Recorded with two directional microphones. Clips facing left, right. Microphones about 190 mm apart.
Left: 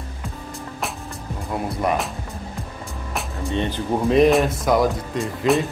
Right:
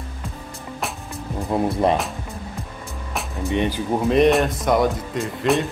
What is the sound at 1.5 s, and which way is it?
Speech, 25° right (ahead or behind).